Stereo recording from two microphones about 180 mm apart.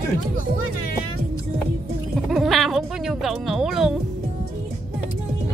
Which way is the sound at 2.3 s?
Centre (ahead or behind).